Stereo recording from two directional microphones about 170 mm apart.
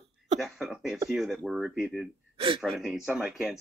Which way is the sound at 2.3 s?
35° right (ahead or behind).